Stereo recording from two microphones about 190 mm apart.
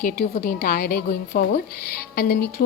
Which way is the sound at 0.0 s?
45° left (ahead or behind).